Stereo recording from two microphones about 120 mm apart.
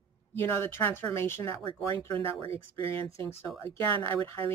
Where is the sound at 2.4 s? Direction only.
20° left (ahead or behind).